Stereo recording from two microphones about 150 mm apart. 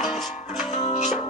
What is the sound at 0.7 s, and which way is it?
Music, 40° left (ahead or behind).